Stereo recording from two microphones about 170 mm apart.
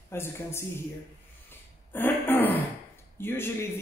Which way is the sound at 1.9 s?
10° left (ahead or behind).